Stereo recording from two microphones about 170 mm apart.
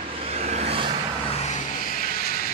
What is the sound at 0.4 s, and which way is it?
Vehicle, 40° right (ahead or behind).